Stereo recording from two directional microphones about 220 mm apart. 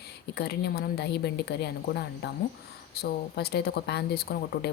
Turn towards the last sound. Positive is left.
turn(degrees=45)  # may be behind; listen again after turning